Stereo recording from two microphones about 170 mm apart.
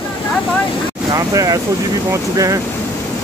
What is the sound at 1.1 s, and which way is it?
Speech, 20° right (ahead or behind).